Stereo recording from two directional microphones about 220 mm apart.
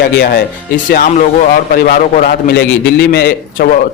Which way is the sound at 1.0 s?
35° left (ahead or behind).